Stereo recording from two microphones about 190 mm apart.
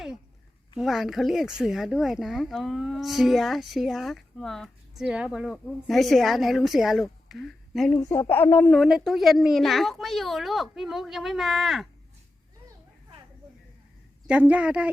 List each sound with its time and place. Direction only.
0.8 s speech: centre (ahead or behind)
7.9 s speech: 15° left (ahead or behind)
8.7 s speech: centre (ahead or behind)
14.3 s a woman's voice: 5° right (ahead or behind)